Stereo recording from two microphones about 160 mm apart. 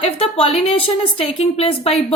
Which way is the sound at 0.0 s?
40° left (ahead or behind).